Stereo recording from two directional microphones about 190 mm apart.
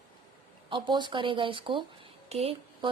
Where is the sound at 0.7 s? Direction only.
25° right (ahead or behind).